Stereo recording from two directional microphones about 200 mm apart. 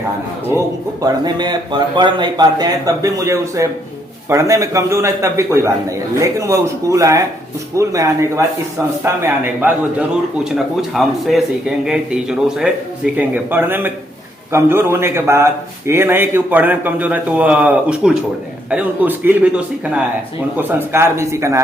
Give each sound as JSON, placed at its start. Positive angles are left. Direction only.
{"t": 1.0, "sound": "a man's voice", "side_deg": -20}